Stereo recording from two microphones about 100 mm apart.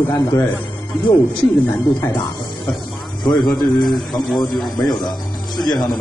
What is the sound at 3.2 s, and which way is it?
Speech, 45° left (ahead or behind).